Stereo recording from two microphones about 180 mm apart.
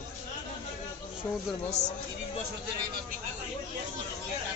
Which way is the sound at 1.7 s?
40° left (ahead or behind).